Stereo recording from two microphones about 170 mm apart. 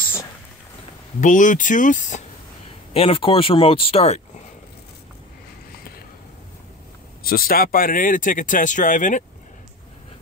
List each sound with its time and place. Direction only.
1.2 s speech: 50° left (ahead or behind)
2.9 s speech: 35° left (ahead or behind)
7.2 s speech: 60° left (ahead or behind)